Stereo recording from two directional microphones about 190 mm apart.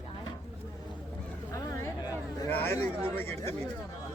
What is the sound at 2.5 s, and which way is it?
Speech, 10° left (ahead or behind).